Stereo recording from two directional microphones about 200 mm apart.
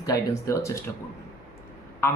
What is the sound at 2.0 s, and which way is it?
Speech, 15° left (ahead or behind).